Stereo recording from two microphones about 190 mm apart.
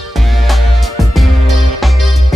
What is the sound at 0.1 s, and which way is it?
Music, centre (ahead or behind).